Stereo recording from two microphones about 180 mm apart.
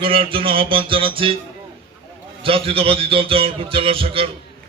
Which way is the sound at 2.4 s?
30° right (ahead or behind).